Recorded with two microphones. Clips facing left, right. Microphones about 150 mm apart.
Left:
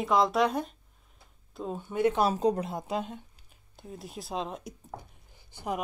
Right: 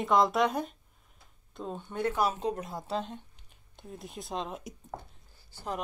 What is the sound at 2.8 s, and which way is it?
Speech, 10° left (ahead or behind).